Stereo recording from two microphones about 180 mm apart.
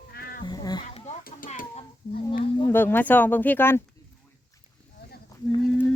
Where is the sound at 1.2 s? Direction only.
50° left (ahead or behind).